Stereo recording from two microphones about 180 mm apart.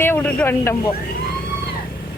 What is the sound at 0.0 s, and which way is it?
Speech, 10° left (ahead or behind).